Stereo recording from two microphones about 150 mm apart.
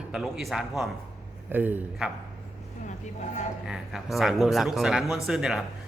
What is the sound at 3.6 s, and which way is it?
A man's voice, 5° right (ahead or behind).